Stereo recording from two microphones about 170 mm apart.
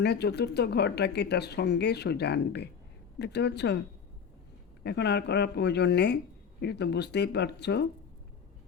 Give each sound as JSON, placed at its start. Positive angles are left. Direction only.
{"t": 0.0, "sound": "speech", "side_deg": 75}
{"t": 4.8, "sound": "speech", "side_deg": 75}